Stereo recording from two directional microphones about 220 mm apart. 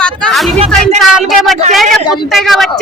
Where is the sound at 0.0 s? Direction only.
5° left (ahead or behind).